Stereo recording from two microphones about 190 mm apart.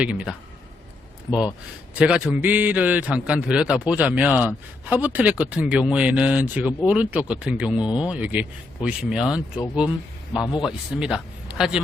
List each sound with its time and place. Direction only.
0.0 s speech: 5° right (ahead or behind)
2.0 s a man's voice: 5° right (ahead or behind)
10.3 s speech: 20° left (ahead or behind)
10.6 s speech: centre (ahead or behind)